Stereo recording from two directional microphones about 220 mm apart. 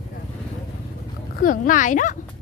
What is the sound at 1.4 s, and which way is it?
Speech, 35° left (ahead or behind).